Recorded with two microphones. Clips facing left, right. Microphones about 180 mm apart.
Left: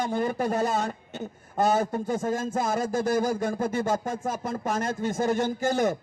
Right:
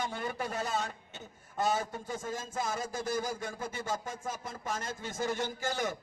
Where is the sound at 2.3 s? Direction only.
65° left (ahead or behind).